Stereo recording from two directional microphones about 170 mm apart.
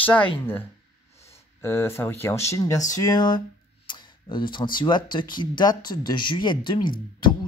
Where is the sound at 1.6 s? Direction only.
15° left (ahead or behind).